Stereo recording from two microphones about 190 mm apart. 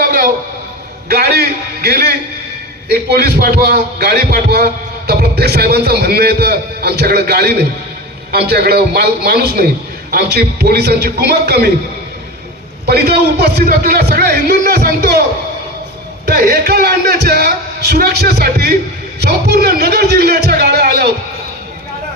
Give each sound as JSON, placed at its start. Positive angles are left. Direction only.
{"t": 0.0, "sound": "a sound", "side_deg": -50}
{"t": 1.0, "sound": "speech", "side_deg": -55}
{"t": 12.8, "sound": "speech", "side_deg": -55}
{"t": 16.2, "sound": "speech", "side_deg": -55}